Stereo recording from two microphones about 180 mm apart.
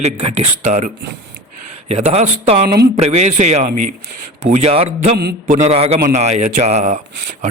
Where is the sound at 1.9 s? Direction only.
35° right (ahead or behind).